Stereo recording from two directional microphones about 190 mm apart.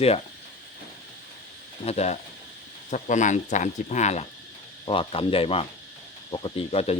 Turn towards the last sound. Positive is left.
turn(degrees=30)  # may be behind; listen again after turning